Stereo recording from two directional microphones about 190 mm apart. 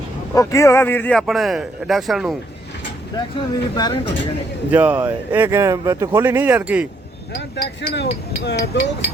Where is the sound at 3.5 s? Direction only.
25° left (ahead or behind).